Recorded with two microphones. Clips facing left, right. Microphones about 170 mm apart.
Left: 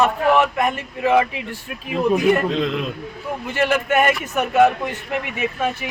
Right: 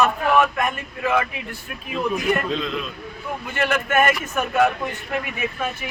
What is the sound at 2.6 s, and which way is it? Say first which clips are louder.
Speech: left 5 dB; 65° left (ahead or behind).